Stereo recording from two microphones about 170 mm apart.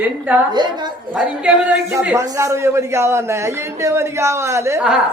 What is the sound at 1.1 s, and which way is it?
A man's voice, 5° right (ahead or behind).